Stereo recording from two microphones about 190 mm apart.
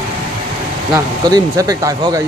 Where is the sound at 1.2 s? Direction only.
20° right (ahead or behind).